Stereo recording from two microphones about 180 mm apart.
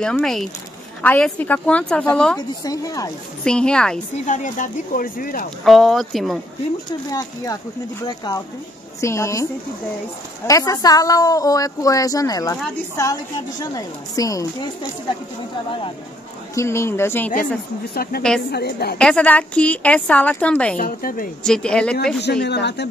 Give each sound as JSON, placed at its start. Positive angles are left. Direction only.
{"t": 0.0, "sound": "a woman's voice", "side_deg": 5}
{"t": 2.3, "sound": "a woman's voice", "side_deg": 20}
{"t": 3.4, "sound": "speech", "side_deg": 5}
{"t": 4.3, "sound": "speech", "side_deg": 45}
{"t": 5.6, "sound": "speech", "side_deg": 0}
{"t": 6.9, "sound": "a woman's voice", "side_deg": 20}
{"t": 16.5, "sound": "a woman's voice", "side_deg": 15}
{"t": 18.0, "sound": "a woman's voice", "side_deg": 55}
{"t": 18.9, "sound": "a woman's voice", "side_deg": 5}
{"t": 20.7, "sound": "speech", "side_deg": 50}
{"t": 21.5, "sound": "speech", "side_deg": 5}
{"t": 22.2, "sound": "speech", "side_deg": 70}